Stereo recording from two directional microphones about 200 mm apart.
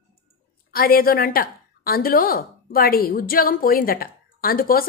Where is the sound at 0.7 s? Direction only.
45° left (ahead or behind).